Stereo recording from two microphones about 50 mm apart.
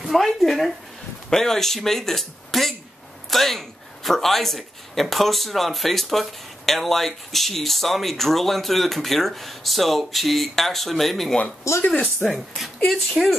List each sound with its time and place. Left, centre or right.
0.0 s a man's voice: centre
11.7 s speech: left
12.2 s a man's voice: centre